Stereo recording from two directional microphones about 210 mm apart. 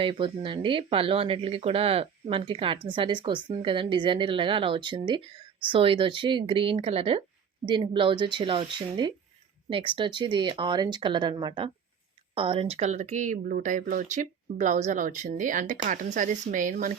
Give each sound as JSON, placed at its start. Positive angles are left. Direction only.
{"t": 0.0, "sound": "a woman's voice", "side_deg": -25}